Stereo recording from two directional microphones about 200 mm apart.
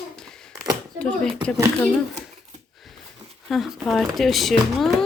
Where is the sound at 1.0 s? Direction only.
5° left (ahead or behind).